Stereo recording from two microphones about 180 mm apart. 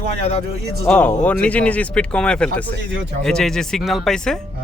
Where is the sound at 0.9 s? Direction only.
10° left (ahead or behind).